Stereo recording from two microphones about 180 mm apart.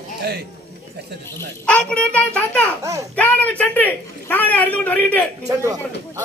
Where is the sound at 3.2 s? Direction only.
10° left (ahead or behind).